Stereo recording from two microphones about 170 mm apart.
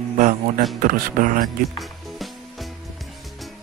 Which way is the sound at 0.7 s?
50° right (ahead or behind).